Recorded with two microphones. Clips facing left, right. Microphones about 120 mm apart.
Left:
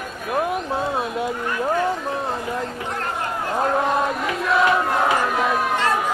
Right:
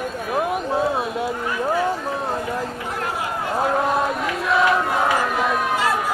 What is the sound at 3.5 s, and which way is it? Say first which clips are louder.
Chant: even; centre (ahead or behind).